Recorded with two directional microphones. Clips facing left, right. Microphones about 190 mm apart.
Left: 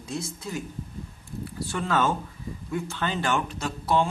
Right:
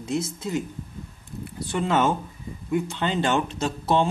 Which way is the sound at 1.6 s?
20° right (ahead or behind).